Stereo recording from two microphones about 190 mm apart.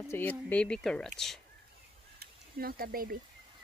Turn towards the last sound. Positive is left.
turn(degrees=-50)  # may be behind; listen again after turning